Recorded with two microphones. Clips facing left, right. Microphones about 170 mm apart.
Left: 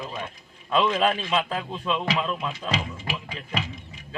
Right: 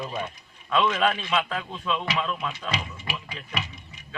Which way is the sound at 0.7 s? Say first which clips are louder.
Left 1 dB; 30° left (ahead or behind).